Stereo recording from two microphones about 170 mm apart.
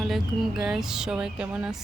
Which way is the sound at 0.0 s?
Centre (ahead or behind).